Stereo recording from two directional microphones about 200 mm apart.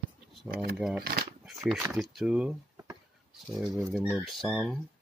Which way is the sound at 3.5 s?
15° right (ahead or behind).